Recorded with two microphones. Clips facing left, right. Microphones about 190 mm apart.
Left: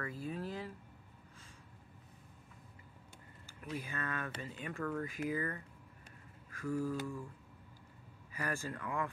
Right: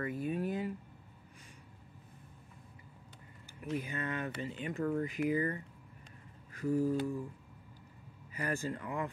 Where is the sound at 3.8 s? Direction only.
20° right (ahead or behind).